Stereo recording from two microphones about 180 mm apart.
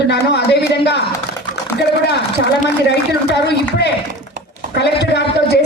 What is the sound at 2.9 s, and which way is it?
A woman's voice, 70° left (ahead or behind).